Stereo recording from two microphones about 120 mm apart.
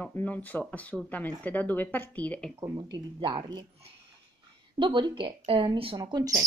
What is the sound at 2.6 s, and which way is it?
A woman's voice, 35° right (ahead or behind).